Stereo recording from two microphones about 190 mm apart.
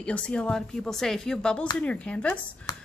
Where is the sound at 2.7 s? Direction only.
15° left (ahead or behind).